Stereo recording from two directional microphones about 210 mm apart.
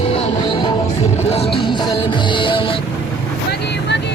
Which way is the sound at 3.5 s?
55° left (ahead or behind).